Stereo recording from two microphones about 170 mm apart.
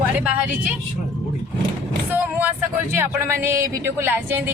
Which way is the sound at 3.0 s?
15° right (ahead or behind).